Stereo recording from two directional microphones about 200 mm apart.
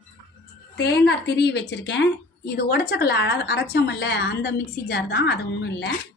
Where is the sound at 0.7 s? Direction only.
55° left (ahead or behind).